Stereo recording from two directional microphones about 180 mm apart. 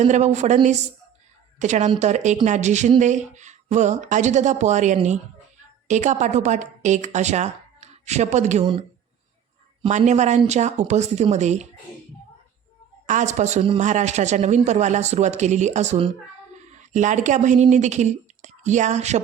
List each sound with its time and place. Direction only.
0.0 s speech: 40° right (ahead or behind)
9.9 s speech: 40° right (ahead or behind)
13.1 s speech: 45° right (ahead or behind)